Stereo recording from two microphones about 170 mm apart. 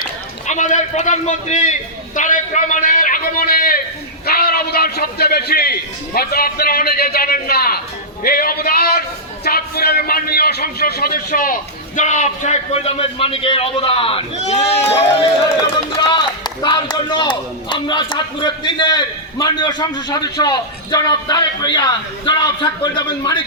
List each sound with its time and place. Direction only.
0.0 s run: 45° left (ahead or behind)
2.1 s a man's voice: 45° left (ahead or behind)
11.9 s a man's voice: 45° left (ahead or behind); by 23.4 s 25° left (ahead or behind)